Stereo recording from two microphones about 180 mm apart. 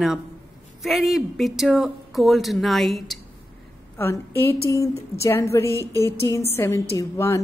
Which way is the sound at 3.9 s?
10° left (ahead or behind).